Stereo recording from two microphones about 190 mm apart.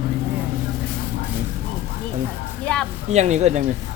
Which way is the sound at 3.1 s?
35° right (ahead or behind).